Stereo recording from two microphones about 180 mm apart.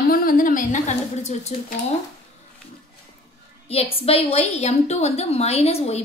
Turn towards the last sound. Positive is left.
turn(degrees=35)  # may be behind; listen again after turning